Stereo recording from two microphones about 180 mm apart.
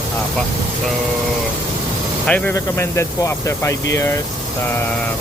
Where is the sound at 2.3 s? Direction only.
10° left (ahead or behind).